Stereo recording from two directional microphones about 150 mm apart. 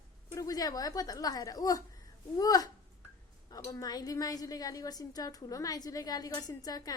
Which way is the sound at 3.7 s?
25° left (ahead or behind).